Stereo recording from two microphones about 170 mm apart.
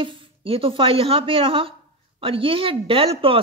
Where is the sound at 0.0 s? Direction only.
30° right (ahead or behind).